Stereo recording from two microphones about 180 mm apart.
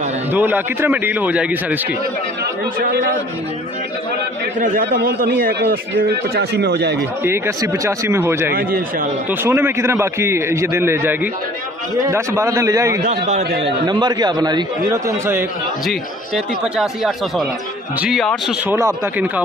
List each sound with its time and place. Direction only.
0.3 s a man's voice: 10° right (ahead or behind)
4.6 s a man's voice: 55° right (ahead or behind)
7.2 s a man's voice: 15° right (ahead or behind)
13.0 s a man's voice: 40° right (ahead or behind)
13.6 s a man's voice: 25° right (ahead or behind)
16.7 s speech: centre (ahead or behind)
18.7 s a man's voice: 15° right (ahead or behind)